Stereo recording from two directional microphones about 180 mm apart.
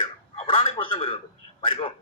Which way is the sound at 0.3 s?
30° left (ahead or behind).